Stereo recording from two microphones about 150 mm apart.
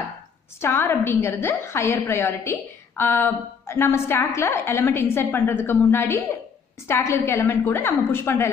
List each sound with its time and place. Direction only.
0.6 s a woman's voice: 15° left (ahead or behind)